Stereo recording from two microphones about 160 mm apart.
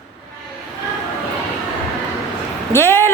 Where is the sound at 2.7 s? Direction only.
15° left (ahead or behind).